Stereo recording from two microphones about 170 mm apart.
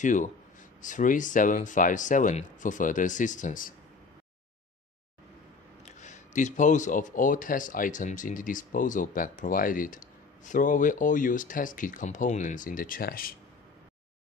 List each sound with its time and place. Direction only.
0.0 s speech: 50° left (ahead or behind)
5.9 s speech: 45° left (ahead or behind)